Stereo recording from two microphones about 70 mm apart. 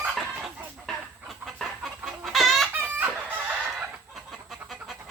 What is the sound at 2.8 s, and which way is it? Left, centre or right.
Chicken, right.